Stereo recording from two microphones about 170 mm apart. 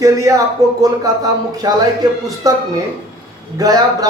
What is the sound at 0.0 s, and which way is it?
Speech, 20° right (ahead or behind).